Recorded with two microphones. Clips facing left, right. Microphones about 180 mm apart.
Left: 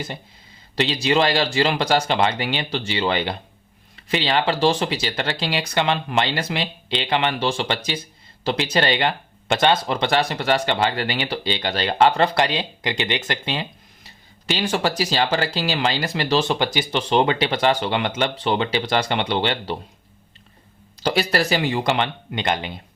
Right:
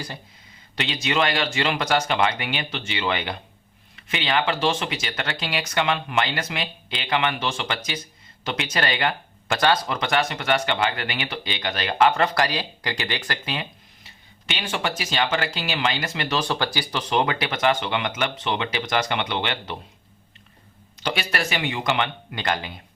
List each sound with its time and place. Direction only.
0.8 s speech: 30° left (ahead or behind)
21.0 s speech: 35° left (ahead or behind)